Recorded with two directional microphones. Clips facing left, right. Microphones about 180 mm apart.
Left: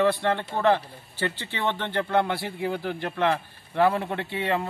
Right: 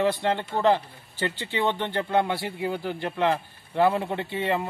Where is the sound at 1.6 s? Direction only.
15° right (ahead or behind).